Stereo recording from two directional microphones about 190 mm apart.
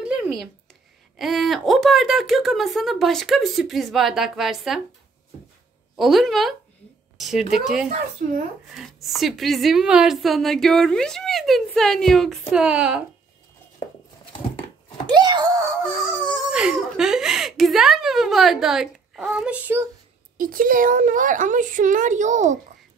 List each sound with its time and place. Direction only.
0.0 s a sound: 5° right (ahead or behind)
1.1 s a woman's voice: centre (ahead or behind)
5.9 s a woman's voice: centre (ahead or behind)
8.2 s a woman's voice: 40° right (ahead or behind)
8.7 s a woman's voice: centre (ahead or behind)
15.0 s wail: 20° right (ahead or behind)
16.2 s whimper: 5° right (ahead or behind)
20.3 s a woman's voice: 45° right (ahead or behind)